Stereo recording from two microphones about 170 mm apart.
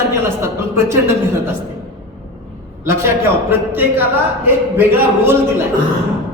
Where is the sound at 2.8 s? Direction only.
15° right (ahead or behind).